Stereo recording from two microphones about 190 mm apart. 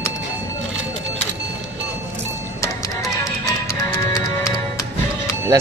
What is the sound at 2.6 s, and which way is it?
Music, 15° left (ahead or behind).